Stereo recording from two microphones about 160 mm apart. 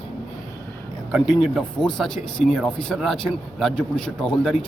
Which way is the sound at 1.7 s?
5° left (ahead or behind).